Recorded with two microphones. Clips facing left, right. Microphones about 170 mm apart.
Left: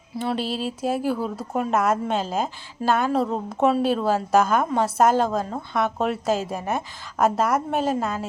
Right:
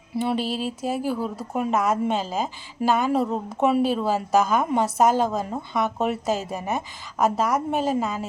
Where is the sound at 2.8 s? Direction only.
15° right (ahead or behind).